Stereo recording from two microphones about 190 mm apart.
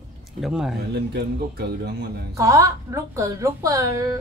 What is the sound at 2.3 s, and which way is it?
A woman's voice, 15° right (ahead or behind).